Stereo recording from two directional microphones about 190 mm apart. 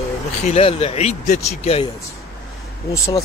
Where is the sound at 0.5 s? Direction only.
30° left (ahead or behind).